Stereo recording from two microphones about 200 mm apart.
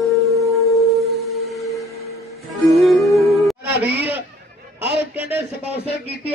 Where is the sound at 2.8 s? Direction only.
Centre (ahead or behind).